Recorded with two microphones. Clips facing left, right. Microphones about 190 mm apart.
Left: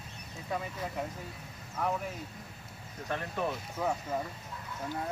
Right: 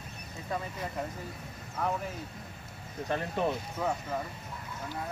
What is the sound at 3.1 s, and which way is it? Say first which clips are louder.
Speech: right 3 dB; 25° right (ahead or behind).